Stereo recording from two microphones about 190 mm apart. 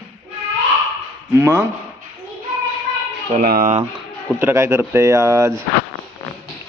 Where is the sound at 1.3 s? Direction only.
15° right (ahead or behind).